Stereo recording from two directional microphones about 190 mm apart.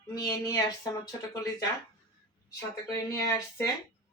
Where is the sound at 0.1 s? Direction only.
20° left (ahead or behind).